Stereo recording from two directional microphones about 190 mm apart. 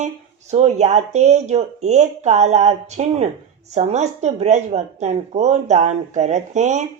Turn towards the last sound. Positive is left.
turn(degrees=-40)  # may be behind; listen again after turning